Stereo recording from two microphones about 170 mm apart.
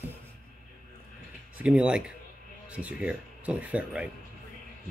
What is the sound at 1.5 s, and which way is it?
Speech, 5° right (ahead or behind).